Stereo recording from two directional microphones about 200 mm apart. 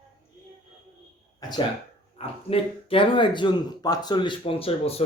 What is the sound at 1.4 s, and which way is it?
Speech, 20° left (ahead or behind).